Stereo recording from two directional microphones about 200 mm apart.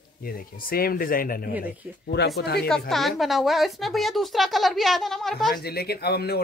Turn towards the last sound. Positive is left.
turn(degrees=55)  # may be behind; listen again after turning